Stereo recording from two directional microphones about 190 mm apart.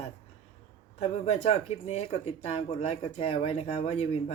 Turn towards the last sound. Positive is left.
turn(degrees=30)  # may be behind; listen again after turning